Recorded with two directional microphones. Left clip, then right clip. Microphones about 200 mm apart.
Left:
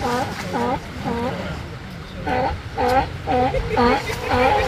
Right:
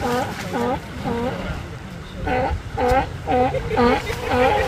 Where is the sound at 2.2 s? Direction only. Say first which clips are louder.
Even; 5° right (ahead or behind).